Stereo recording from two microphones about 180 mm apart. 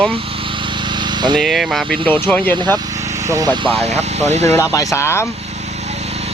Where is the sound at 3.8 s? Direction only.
40° right (ahead or behind).